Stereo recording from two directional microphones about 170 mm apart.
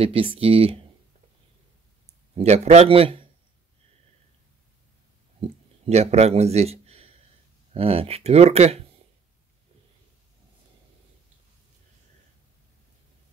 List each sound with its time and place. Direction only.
0.0 s speech: 35° right (ahead or behind)
2.3 s speech: 40° right (ahead or behind)
5.9 s speech: 40° right (ahead or behind)